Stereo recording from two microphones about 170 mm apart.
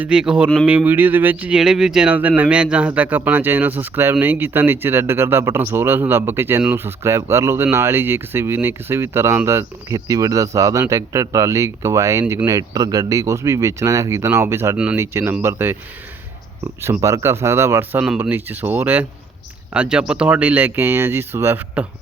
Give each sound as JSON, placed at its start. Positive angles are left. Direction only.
{"t": 0.0, "sound": "speech", "side_deg": -5}
{"t": 16.8, "sound": "speech", "side_deg": -20}